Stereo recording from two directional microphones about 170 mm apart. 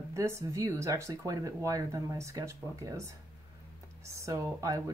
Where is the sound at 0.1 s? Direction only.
15° right (ahead or behind).